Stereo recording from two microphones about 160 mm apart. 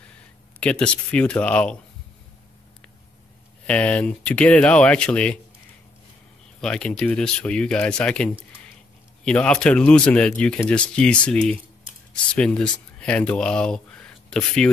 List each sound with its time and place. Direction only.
0.6 s speech: 5° left (ahead or behind)
3.6 s speech: 10° left (ahead or behind)
6.6 s speech: 5° left (ahead or behind)